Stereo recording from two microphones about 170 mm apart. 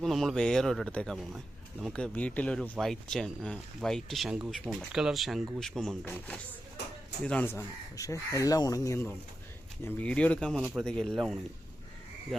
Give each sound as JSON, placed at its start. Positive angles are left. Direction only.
{"t": 0.0, "sound": "speech", "side_deg": 0}